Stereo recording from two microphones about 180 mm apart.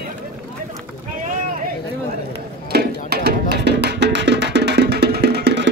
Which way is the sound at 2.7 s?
65° right (ahead or behind).